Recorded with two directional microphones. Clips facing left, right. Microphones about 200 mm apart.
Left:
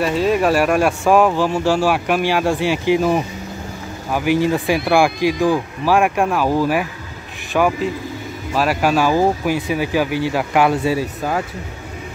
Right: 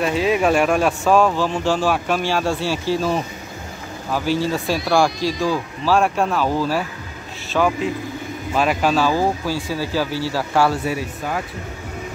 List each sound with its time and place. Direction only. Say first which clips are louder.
0.0 s speech: left 2 dB; centre (ahead or behind); by 11.0 s 20° left (ahead or behind)